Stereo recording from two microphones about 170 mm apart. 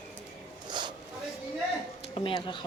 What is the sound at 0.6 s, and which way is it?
Zipper, 25° right (ahead or behind).